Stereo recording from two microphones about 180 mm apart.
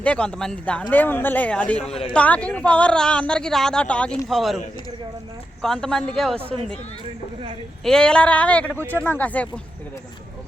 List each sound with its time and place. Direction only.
0.0 s speech: 5° left (ahead or behind)
1.9 s a man's voice: 30° left (ahead or behind)
2.1 s a woman's voice: 10° left (ahead or behind)
5.6 s a woman's voice: 5° left (ahead or behind)
7.9 s speech: 5° left (ahead or behind)
8.8 s speech: 15° right (ahead or behind)
9.0 s speech: 10° left (ahead or behind)